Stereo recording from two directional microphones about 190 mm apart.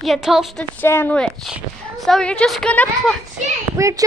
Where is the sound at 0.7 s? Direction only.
10° left (ahead or behind).